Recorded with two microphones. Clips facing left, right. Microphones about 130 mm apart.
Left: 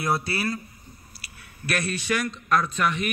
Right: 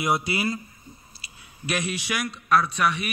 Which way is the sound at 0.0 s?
15° right (ahead or behind).